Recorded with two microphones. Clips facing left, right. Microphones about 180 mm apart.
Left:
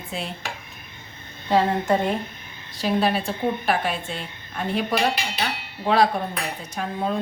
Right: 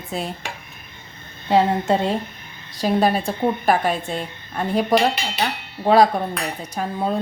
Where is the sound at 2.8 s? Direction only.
40° right (ahead or behind).